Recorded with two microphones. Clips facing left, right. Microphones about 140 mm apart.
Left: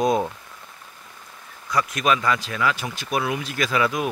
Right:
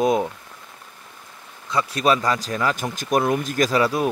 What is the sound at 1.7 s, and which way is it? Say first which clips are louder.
Speech: right 2 dB; 35° right (ahead or behind).